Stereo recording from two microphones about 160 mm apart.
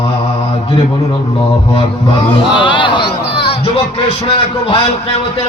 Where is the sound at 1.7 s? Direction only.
35° left (ahead or behind).